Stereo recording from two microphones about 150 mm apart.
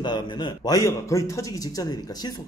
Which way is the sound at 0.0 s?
30° left (ahead or behind).